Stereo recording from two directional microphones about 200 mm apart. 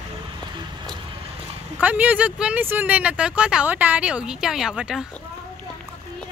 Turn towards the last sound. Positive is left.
turn(degrees=-5)  # may be behind; listen again after turning